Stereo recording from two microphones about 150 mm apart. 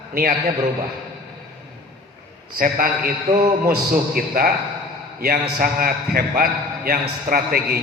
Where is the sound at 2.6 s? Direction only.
70° right (ahead or behind).